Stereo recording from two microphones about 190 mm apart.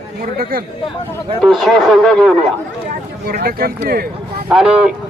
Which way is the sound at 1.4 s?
Centre (ahead or behind).